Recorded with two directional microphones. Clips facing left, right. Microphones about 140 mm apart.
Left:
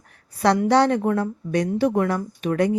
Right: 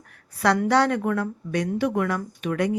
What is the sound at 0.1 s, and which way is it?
A woman's voice, 25° left (ahead or behind).